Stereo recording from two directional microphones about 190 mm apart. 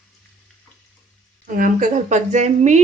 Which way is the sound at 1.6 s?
45° right (ahead or behind).